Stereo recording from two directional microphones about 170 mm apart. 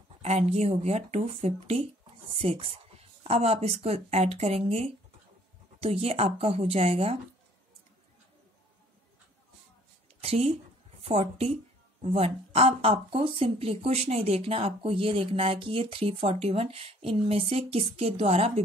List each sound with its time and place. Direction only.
0.2 s speech: 40° right (ahead or behind)
10.2 s speech: 35° right (ahead or behind)